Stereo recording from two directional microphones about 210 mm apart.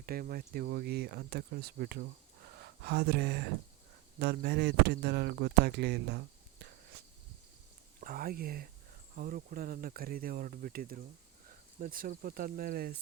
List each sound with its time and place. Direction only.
0.0 s speech: 45° right (ahead or behind)
8.0 s speech: 45° right (ahead or behind)